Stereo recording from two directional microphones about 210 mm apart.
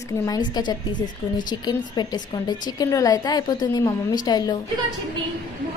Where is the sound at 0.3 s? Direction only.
20° left (ahead or behind).